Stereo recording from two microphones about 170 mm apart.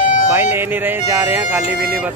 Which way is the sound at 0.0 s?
50° left (ahead or behind).